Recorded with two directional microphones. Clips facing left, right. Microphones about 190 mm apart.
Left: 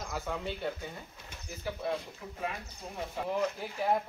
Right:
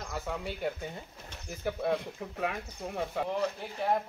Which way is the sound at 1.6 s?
65° right (ahead or behind).